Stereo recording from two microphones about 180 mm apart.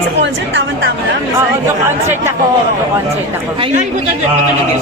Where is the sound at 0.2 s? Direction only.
80° right.